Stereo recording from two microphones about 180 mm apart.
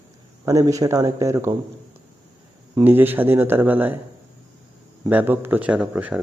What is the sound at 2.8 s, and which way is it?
Speech, 10° right (ahead or behind).